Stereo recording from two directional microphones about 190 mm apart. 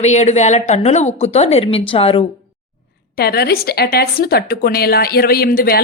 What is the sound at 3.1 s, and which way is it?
A woman's voice, 55° left (ahead or behind).